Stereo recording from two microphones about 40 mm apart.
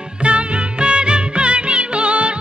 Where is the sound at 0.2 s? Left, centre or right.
Right.